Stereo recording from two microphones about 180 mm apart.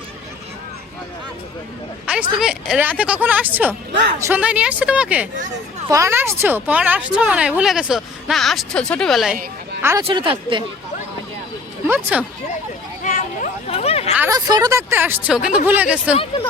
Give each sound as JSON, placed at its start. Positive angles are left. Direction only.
{"t": 2.1, "sound": "speech", "side_deg": -5}
{"t": 9.8, "sound": "speech", "side_deg": -15}
{"t": 10.1, "sound": "speech", "side_deg": -30}
{"t": 12.1, "sound": "speech", "side_deg": -5}
{"t": 13.0, "sound": "a sound", "side_deg": 45}
{"t": 14.2, "sound": "speech", "side_deg": -20}